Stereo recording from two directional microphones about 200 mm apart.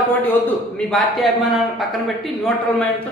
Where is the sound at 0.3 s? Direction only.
5° left (ahead or behind).